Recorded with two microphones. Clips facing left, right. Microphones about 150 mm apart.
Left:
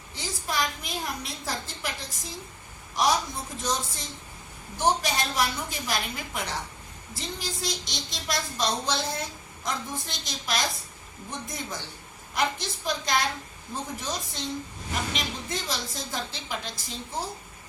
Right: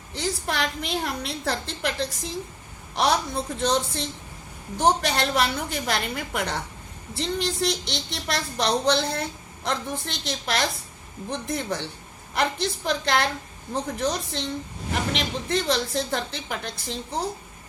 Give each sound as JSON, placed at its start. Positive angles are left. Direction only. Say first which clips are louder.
{"t": 0.1, "sound": "a woman's voice", "louder": "right 5 dB", "side_deg": -65}